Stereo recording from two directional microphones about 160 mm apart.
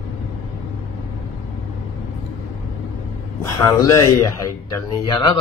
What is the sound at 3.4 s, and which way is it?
Speech, 20° left (ahead or behind).